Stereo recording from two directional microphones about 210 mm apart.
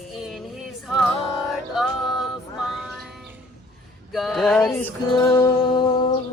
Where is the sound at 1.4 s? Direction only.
Centre (ahead or behind).